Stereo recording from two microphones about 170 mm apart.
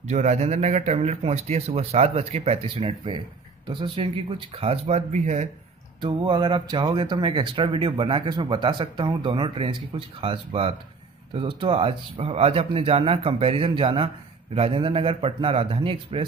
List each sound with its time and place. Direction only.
0.0 s speech: 45° right (ahead or behind)
5.9 s speech: 25° right (ahead or behind)